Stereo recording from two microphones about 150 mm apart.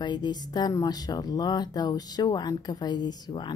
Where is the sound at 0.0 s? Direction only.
30° left (ahead or behind).